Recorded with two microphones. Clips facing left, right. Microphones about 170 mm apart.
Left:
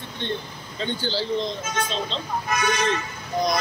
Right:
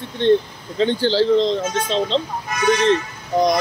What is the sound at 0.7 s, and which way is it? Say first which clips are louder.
Speech: right 10 dB; 90° right.